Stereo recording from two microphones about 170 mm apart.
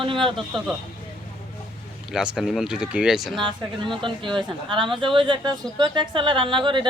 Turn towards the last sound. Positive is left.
turn(degrees=-30)  # may be behind; listen again after turning